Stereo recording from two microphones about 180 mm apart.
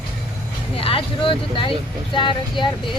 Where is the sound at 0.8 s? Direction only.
30° left (ahead or behind).